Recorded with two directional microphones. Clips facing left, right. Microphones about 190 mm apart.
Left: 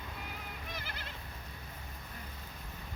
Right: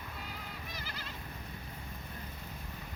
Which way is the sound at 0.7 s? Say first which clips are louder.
Left 1 dB; 55° left (ahead or behind).